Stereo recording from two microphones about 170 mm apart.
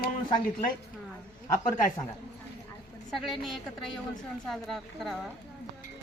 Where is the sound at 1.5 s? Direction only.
50° left (ahead or behind).